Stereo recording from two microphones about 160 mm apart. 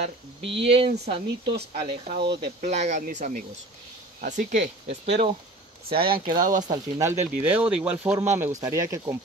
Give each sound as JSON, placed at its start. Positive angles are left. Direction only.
{"t": 0.4, "sound": "speech", "side_deg": -90}
{"t": 0.7, "sound": "speech", "side_deg": -35}
{"t": 2.1, "sound": "speech", "side_deg": -90}
{"t": 2.6, "sound": "speech", "side_deg": -45}
{"t": 4.8, "sound": "speech", "side_deg": -40}
{"t": 5.9, "sound": "speech", "side_deg": -75}
{"t": 6.6, "sound": "speech", "side_deg": -25}
{"t": 7.1, "sound": "speech", "side_deg": -10}